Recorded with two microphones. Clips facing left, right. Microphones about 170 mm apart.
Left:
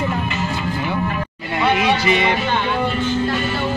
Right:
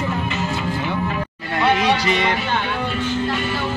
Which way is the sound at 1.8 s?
15° left (ahead or behind).